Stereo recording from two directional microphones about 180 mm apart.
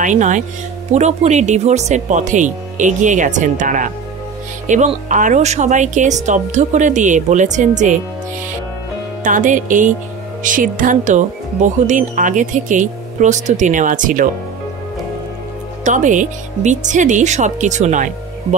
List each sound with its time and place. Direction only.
0.0 s speech: 45° right (ahead or behind)
9.2 s speech: 45° right (ahead or behind)
15.8 s speech: 45° right (ahead or behind)